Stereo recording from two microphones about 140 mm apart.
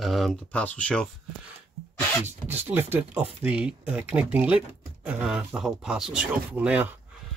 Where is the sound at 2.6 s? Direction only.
15° right (ahead or behind).